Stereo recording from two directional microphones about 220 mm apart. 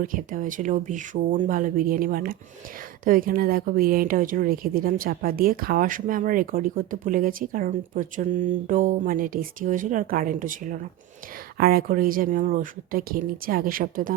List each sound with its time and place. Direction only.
0.1 s speech: 40° right (ahead or behind)